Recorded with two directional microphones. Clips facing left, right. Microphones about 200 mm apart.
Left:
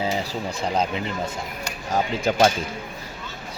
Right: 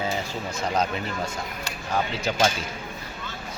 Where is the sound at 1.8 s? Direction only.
45° left (ahead or behind).